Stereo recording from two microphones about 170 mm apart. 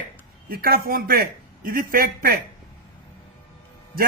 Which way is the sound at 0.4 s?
60° right (ahead or behind).